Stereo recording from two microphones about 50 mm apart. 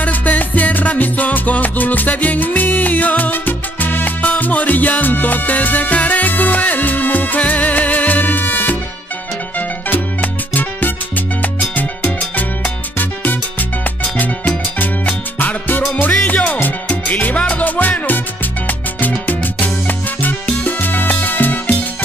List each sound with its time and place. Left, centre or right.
0.0 s music: left
9.8 s music: left
14.1 s music: left
19.9 s salsa music: left